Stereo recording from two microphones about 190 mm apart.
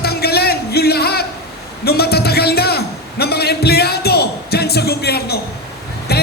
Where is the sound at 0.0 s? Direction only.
55° left (ahead or behind).